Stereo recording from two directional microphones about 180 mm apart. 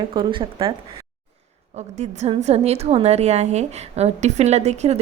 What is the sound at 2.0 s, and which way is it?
A woman's voice, 35° right (ahead or behind).